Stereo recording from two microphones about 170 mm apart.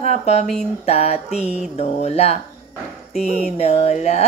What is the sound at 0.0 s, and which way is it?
Speech, 40° left (ahead or behind).